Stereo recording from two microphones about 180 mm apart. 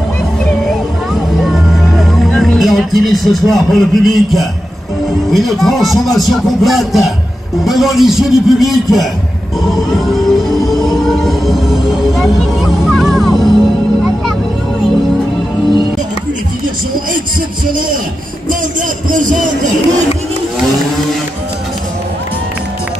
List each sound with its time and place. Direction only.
1.4 s music: centre (ahead or behind)
3.0 s a man's voice: centre (ahead or behind)
10.7 s music: centre (ahead or behind)
18.5 s speech: 45° right (ahead or behind)